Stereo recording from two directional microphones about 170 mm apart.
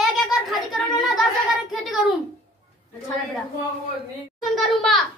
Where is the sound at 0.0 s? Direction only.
Centre (ahead or behind).